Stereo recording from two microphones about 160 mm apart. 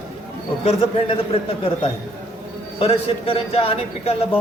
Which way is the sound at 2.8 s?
35° left (ahead or behind).